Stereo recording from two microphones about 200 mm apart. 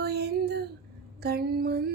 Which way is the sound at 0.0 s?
55° right (ahead or behind).